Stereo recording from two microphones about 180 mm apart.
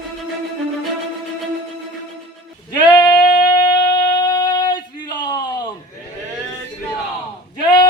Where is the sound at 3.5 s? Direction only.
25° left (ahead or behind).